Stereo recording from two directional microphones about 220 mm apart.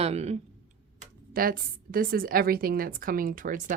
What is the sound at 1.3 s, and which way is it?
Speech, 40° right (ahead or behind).